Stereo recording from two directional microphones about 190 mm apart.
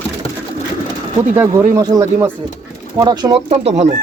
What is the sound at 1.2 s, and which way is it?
Speech, 15° right (ahead or behind).